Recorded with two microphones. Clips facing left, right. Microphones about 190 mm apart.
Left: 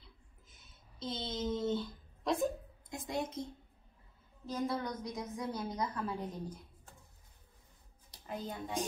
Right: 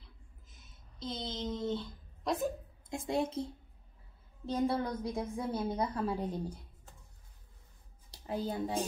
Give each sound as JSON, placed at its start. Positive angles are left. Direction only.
{"t": 0.0, "sound": "a sound", "side_deg": 0}
{"t": 2.9, "sound": "a woman's voice", "side_deg": -30}
{"t": 4.5, "sound": "a woman's voice", "side_deg": -30}
{"t": 8.1, "sound": "a child's voice", "side_deg": -30}